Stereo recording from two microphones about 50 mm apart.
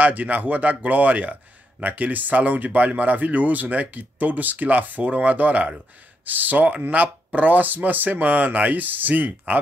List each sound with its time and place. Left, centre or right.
0.0 s a man's voice: right